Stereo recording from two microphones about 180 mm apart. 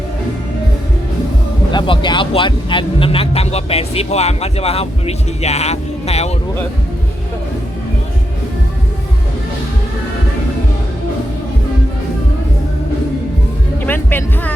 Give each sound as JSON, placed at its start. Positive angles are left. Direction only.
{"t": 1.7, "sound": "speech", "side_deg": 25}
{"t": 13.8, "sound": "speech", "side_deg": 10}